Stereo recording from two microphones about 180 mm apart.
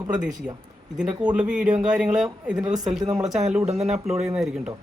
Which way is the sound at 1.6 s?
45° right (ahead or behind).